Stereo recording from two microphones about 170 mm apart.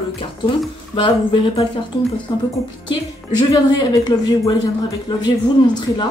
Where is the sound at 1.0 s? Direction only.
30° left (ahead or behind).